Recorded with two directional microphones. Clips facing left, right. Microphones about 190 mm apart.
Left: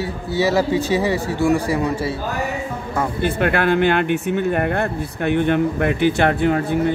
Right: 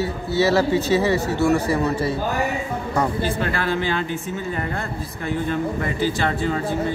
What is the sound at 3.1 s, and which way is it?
Speech, 60° left (ahead or behind).